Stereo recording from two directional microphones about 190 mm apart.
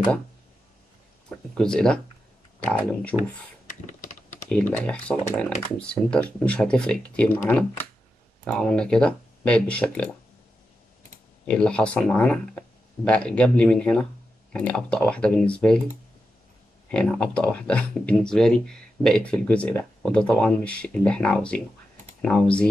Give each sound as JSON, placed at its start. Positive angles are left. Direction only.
{"t": 1.3, "sound": "speech", "side_deg": 5}
{"t": 3.2, "sound": "computer keyboard", "side_deg": 40}
{"t": 4.5, "sound": "speech", "side_deg": 10}
{"t": 11.4, "sound": "speech", "side_deg": 5}
{"t": 16.9, "sound": "speech", "side_deg": 5}